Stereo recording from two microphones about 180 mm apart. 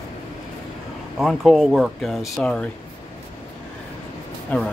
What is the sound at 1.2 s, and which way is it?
Speech, centre (ahead or behind).